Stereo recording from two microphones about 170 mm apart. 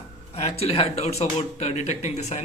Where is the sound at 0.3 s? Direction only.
40° left (ahead or behind).